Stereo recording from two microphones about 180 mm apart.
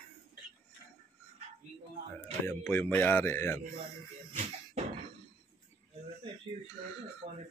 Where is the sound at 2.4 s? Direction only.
10° left (ahead or behind).